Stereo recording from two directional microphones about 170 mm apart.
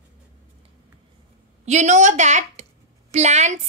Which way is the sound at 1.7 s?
45° right (ahead or behind).